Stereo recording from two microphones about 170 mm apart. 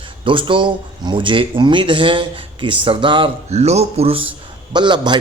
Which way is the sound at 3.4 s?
40° right (ahead or behind).